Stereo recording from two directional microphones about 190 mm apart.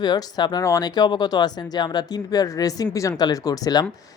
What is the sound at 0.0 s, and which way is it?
A woman's voice, 20° left (ahead or behind).